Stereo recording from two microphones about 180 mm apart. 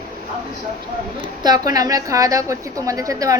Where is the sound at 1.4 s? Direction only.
20° right (ahead or behind).